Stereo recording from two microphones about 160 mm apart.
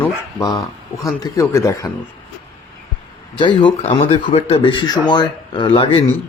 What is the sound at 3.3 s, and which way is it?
Speech, 30° left (ahead or behind).